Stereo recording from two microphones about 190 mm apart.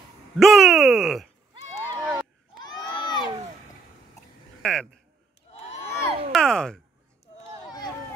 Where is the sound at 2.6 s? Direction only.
25° left (ahead or behind).